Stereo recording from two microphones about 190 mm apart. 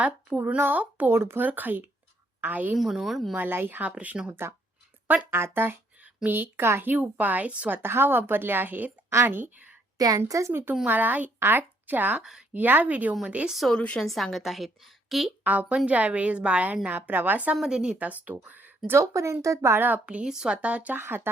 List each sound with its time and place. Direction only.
0.0 s a woman's voice: 10° right (ahead or behind)
3.4 s a woman's voice: 10° right (ahead or behind)